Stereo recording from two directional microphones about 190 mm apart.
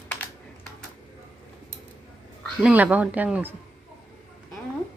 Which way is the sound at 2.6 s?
10° right (ahead or behind).